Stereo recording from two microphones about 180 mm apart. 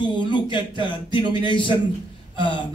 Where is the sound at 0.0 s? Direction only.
25° left (ahead or behind).